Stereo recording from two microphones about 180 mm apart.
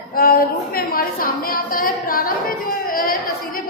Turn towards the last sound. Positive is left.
turn(degrees=55)  # may be behind; listen again after turning